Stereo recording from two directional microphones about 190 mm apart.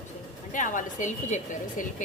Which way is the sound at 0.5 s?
45° left (ahead or behind).